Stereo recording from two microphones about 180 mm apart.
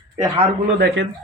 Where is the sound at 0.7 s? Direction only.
70° right (ahead or behind).